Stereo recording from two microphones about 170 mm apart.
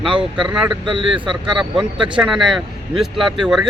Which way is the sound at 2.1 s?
5° right (ahead or behind).